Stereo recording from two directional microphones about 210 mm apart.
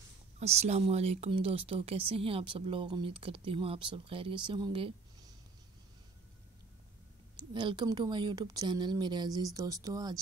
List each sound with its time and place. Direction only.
0.4 s speech: 30° right (ahead or behind)
7.5 s speech: 20° right (ahead or behind)